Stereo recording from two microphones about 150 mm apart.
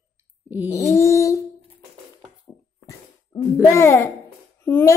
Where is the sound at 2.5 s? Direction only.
25° left (ahead or behind).